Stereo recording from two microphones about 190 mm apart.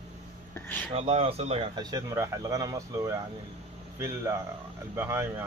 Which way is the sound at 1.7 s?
20° right (ahead or behind).